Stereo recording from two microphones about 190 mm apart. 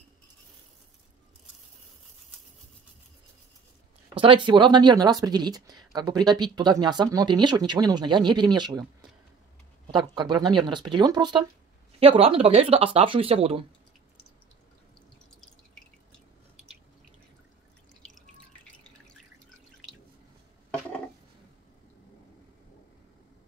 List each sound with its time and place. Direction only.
4.2 s speech: 25° right (ahead or behind)
9.8 s speech: 25° right (ahead or behind)